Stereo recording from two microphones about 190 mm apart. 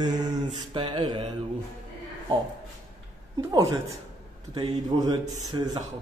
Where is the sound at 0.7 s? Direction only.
25° right (ahead or behind).